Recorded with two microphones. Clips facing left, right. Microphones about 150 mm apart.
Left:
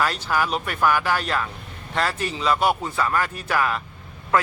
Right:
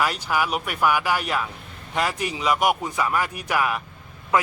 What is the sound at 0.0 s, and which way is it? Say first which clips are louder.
A man's voice: even; 10° right (ahead or behind).